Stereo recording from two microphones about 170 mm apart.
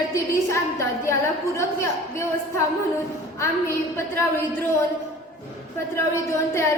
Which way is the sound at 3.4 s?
15° left (ahead or behind).